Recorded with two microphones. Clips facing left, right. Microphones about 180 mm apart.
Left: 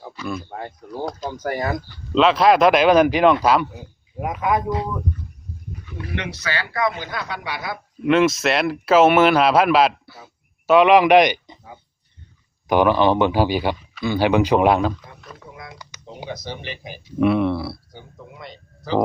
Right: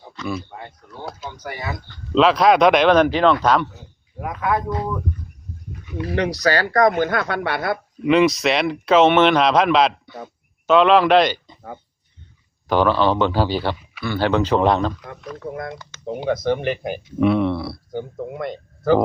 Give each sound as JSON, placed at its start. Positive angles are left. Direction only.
{"t": 0.1, "sound": "speech", "side_deg": 5}
{"t": 0.3, "sound": "speech", "side_deg": 50}
{"t": 2.1, "sound": "speech", "side_deg": 0}
{"t": 6.1, "sound": "speech", "side_deg": -35}
{"t": 8.0, "sound": "a man's voice", "side_deg": 0}
{"t": 12.6, "sound": "speech", "side_deg": 15}
{"t": 15.4, "sound": "speech", "side_deg": -55}
{"t": 17.2, "sound": "speech", "side_deg": 0}
{"t": 17.9, "sound": "speech", "side_deg": -55}